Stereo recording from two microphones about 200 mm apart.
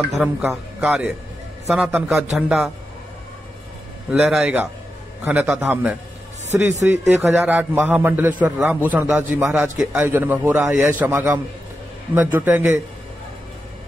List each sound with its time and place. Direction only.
0.1 s speech: 5° right (ahead or behind)
4.1 s a man's voice: 5° right (ahead or behind)